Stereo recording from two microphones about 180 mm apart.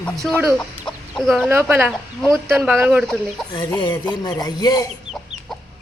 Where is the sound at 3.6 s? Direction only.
20° left (ahead or behind).